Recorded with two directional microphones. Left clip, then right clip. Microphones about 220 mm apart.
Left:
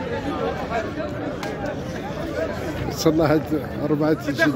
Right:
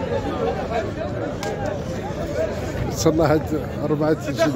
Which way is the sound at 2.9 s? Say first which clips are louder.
Right 1 dB; 10° left (ahead or behind).